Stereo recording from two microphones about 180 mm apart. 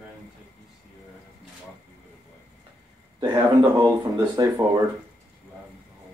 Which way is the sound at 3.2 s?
25° right (ahead or behind).